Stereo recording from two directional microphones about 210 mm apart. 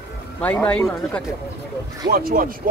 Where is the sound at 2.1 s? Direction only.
45° right (ahead or behind).